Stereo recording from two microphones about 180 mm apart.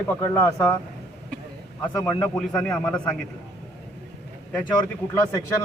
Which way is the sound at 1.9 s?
15° left (ahead or behind).